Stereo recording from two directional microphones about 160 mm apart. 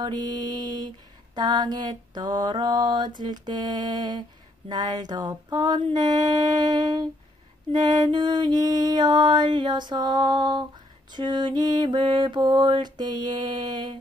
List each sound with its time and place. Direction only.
0.0 s mantra: 30° right (ahead or behind)